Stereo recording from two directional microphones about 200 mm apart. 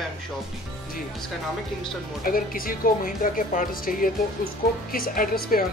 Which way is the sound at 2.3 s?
45° left (ahead or behind).